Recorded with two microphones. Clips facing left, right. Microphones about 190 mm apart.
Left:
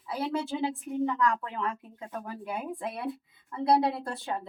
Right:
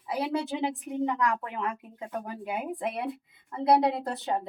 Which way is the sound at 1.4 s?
20° right (ahead or behind).